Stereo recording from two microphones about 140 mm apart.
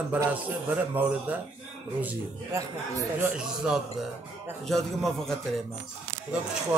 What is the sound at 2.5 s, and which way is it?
Speech, 20° right (ahead or behind).